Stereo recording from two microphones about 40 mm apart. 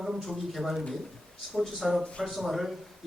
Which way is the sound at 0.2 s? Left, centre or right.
Centre.